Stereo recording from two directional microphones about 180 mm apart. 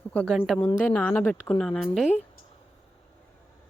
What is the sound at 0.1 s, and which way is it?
A woman's voice, 5° left (ahead or behind).